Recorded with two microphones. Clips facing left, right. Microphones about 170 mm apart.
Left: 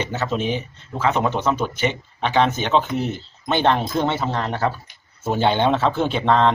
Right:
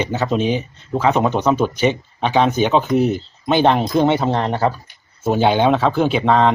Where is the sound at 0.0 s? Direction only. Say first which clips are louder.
Right 5 dB; 15° right (ahead or behind).